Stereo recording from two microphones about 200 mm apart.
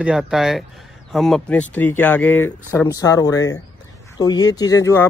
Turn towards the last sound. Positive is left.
turn(degrees=15)  # may be behind; listen again after turning